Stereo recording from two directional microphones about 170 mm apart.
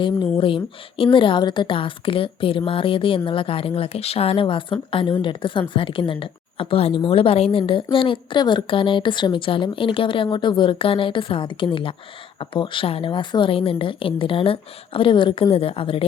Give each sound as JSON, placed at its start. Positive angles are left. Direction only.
{"t": 0.0, "sound": "a woman's voice", "side_deg": 30}